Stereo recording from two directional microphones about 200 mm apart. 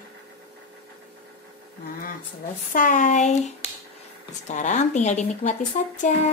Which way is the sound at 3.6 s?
30° left (ahead or behind).